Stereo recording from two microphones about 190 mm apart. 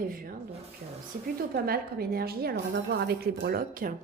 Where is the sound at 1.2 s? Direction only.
50° right (ahead or behind).